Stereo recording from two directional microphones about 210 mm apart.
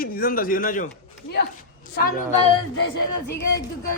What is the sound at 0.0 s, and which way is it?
Speech, 45° left (ahead or behind).